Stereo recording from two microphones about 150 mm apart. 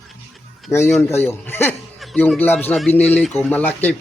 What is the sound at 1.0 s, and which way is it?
Speech, 15° left (ahead or behind).